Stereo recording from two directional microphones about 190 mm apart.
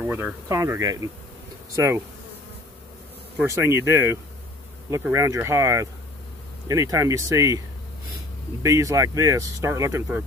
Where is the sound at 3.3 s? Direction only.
15° right (ahead or behind).